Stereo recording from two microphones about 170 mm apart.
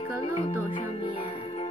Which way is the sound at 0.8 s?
30° left (ahead or behind).